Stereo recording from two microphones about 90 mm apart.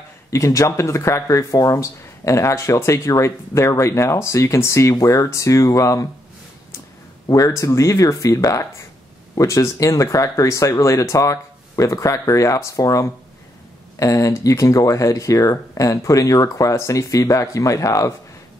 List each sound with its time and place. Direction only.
0.3 s speech: 35° left (ahead or behind)
7.2 s speech: 40° left (ahead or behind)